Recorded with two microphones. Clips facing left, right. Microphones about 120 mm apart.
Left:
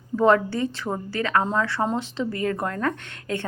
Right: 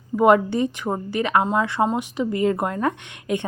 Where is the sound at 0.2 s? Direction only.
15° right (ahead or behind).